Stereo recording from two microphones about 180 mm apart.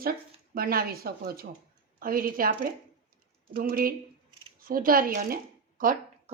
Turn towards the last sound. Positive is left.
turn(degrees=-50)  # may be behind; listen again after turning